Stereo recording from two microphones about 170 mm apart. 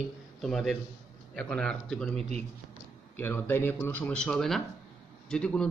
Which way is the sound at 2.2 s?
40° right (ahead or behind).